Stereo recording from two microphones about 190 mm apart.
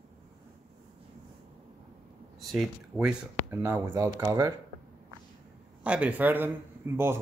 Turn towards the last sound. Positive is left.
turn(degrees=-10)  # may be behind; listen again after turning